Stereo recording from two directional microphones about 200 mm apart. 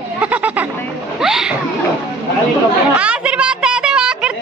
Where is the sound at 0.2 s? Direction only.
10° right (ahead or behind).